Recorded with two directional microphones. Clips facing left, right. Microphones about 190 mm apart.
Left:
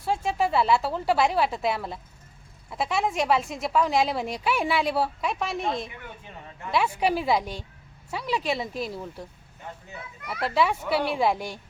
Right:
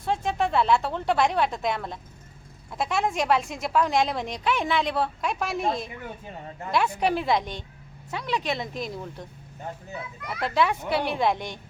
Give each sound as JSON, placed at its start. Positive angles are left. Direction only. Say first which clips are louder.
{"t": 0.0, "sound": "a woman's voice", "louder": "even", "side_deg": 5}
{"t": 9.7, "sound": "speech", "louder": "right 4 dB", "side_deg": -40}
{"t": 10.4, "sound": "a woman's voice", "louder": "even", "side_deg": 0}